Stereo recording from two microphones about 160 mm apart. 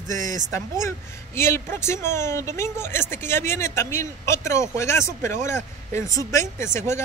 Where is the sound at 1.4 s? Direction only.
15° left (ahead or behind).